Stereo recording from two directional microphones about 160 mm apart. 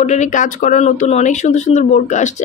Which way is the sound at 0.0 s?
50° left (ahead or behind).